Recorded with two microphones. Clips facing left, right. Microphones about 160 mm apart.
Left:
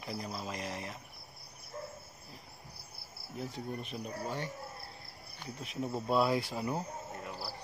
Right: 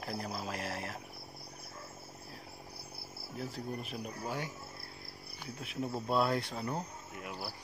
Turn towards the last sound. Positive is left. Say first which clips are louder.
# even
turn(degrees=-20)  # may be behind; listen again after turning